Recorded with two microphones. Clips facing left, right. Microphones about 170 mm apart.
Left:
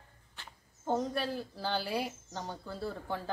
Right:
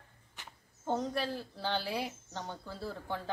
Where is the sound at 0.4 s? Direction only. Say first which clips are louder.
Even; 15° right (ahead or behind).